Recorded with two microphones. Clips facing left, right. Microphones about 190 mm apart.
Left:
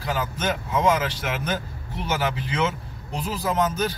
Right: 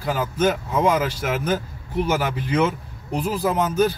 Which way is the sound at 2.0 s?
50° right (ahead or behind).